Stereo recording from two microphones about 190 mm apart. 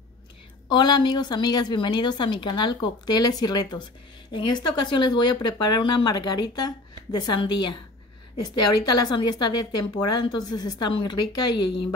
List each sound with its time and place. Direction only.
0.7 s speech: 20° left (ahead or behind)